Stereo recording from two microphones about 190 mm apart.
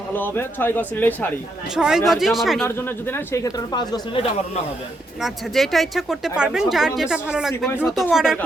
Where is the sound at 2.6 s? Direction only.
15° left (ahead or behind); by 4.6 s 30° left (ahead or behind).